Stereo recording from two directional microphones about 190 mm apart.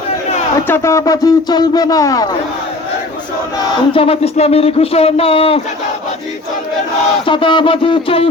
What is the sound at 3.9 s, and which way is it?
Speech, 30° left (ahead or behind).